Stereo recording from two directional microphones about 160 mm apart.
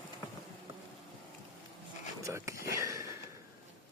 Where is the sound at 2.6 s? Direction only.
20° right (ahead or behind).